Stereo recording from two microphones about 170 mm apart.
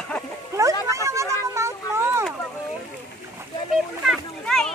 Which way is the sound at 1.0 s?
15° right (ahead or behind).